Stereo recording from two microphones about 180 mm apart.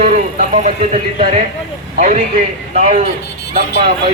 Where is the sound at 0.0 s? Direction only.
45° right (ahead or behind).